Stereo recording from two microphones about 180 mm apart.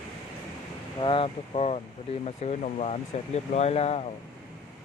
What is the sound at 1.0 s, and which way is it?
Speech, 30° left (ahead or behind).